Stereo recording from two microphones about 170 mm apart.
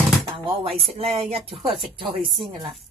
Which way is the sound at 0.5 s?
35° right (ahead or behind).